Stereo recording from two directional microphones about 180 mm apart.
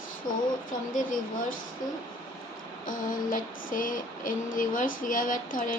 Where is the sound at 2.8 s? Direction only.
45° left (ahead or behind).